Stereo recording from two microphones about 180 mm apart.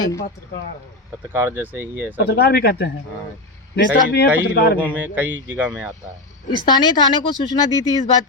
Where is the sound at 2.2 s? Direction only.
60° left (ahead or behind).